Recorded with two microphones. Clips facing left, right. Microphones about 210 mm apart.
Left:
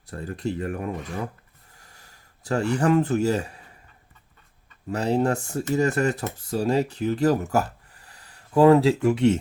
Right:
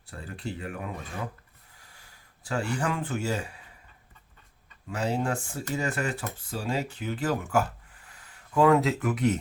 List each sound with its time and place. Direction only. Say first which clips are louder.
0.1 s speech: left 8 dB; 40° left (ahead or behind)
4.9 s speech: left 6 dB; 40° left (ahead or behind)